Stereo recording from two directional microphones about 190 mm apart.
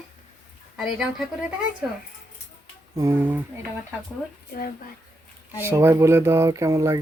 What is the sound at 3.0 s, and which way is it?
Speech, 15° right (ahead or behind).